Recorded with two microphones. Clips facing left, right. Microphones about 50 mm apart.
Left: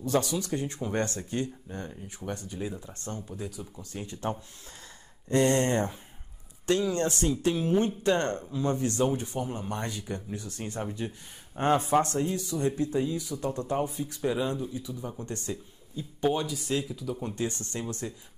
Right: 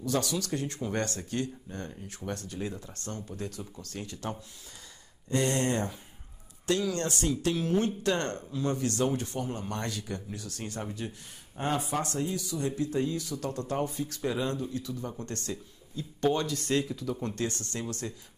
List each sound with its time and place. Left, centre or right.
0.0 s speech: left
5.3 s speech: left
10.6 s speech: centre
11.8 s speech: left
12.9 s speech: centre
17.4 s speech: left